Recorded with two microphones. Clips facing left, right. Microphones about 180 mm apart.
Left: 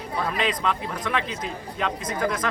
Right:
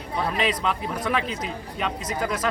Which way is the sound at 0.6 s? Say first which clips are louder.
Right 1 dB; 10° right (ahead or behind).